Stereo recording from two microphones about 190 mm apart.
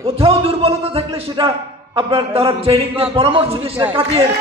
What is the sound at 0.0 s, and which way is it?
A man's voice, 30° right (ahead or behind).